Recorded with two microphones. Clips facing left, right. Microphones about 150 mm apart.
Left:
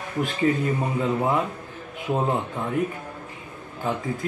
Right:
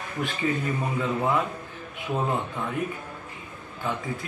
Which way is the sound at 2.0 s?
20° left (ahead or behind).